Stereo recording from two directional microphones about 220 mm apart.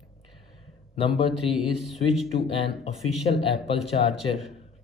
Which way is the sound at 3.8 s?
Centre (ahead or behind).